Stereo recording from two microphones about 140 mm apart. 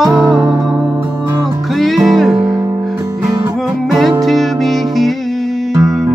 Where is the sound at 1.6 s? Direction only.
Centre (ahead or behind).